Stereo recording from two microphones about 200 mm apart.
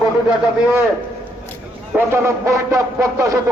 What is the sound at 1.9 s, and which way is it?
Speech, 15° right (ahead or behind).